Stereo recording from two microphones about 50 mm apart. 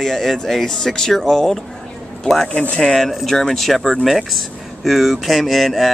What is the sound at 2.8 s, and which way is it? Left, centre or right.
Speech, centre.